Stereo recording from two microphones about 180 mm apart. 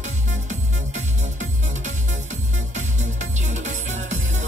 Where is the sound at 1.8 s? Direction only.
40° right (ahead or behind).